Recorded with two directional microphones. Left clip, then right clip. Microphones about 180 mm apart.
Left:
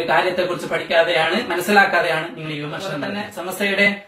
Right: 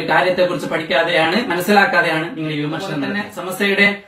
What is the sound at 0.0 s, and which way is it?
Speech, centre (ahead or behind).